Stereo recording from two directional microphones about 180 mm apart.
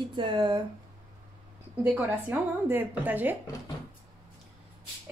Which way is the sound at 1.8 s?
10° right (ahead or behind).